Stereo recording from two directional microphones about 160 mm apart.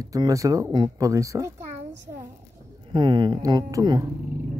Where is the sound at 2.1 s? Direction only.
20° right (ahead or behind).